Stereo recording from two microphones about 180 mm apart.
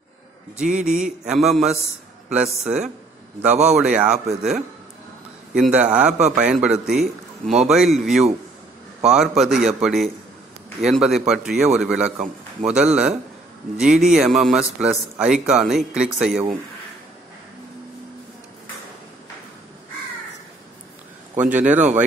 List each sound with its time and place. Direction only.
0.7 s a man's voice: 45° right (ahead or behind)
1.0 s a man's voice: 5° right (ahead or behind)
5.7 s a man's voice: 5° right (ahead or behind)
21.4 s a man's voice: 10° right (ahead or behind)